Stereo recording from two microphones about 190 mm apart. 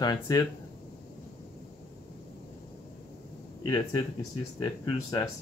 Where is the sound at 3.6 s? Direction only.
20° left (ahead or behind).